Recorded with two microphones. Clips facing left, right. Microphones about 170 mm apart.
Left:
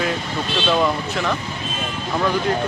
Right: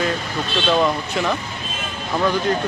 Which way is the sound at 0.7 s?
Centre (ahead or behind).